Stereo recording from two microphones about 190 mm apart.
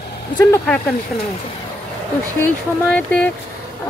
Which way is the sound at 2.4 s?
5° left (ahead or behind).